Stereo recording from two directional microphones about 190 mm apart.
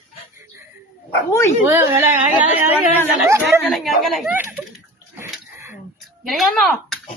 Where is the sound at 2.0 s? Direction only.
10° right (ahead or behind).